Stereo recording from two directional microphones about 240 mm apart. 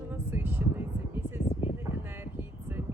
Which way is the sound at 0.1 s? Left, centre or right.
Centre.